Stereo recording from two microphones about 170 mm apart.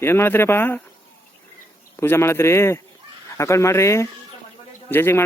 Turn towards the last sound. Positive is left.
turn(degrees=15)  # may be behind; listen again after turning